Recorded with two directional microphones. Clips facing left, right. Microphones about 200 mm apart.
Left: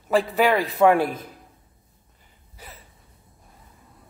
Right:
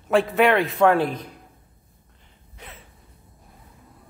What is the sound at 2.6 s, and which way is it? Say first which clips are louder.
Gasp: right 1 dB; centre (ahead or behind).